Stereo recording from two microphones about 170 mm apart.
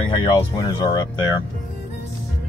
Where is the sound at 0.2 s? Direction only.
25° left (ahead or behind).